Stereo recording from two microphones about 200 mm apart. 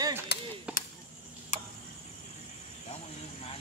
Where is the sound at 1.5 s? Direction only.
35° left (ahead or behind).